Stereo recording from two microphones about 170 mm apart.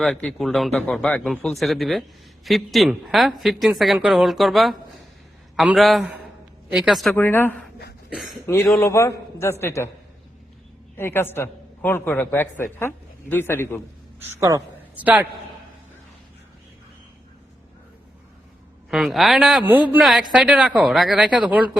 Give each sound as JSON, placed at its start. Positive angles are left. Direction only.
{"t": 0.0, "sound": "speech", "side_deg": 5}
{"t": 7.2, "sound": "a man's voice", "side_deg": 10}
{"t": 8.7, "sound": "a man's voice", "side_deg": 15}
{"t": 10.9, "sound": "a man's voice", "side_deg": 15}
{"t": 14.2, "sound": "a woman's voice", "side_deg": -20}
{"t": 15.0, "sound": "a woman's voice", "side_deg": -10}
{"t": 18.9, "sound": "a woman's voice", "side_deg": 0}